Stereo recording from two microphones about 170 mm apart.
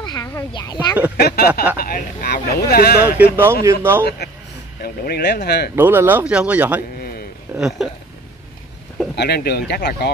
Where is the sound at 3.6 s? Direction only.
15° right (ahead or behind).